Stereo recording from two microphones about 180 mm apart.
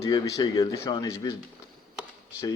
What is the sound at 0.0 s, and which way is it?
Speech, 20° left (ahead or behind).